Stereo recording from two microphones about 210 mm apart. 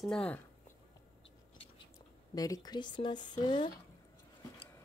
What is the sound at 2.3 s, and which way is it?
Speech, 15° left (ahead or behind).